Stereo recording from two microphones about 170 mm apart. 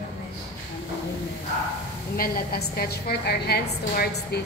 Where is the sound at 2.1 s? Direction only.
60° left (ahead or behind).